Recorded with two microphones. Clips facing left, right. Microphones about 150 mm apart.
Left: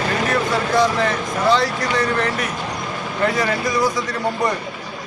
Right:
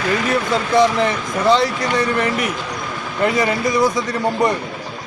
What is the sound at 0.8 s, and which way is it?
Speech, 20° right (ahead or behind).